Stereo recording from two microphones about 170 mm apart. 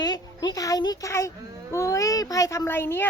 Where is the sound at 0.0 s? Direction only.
25° left (ahead or behind).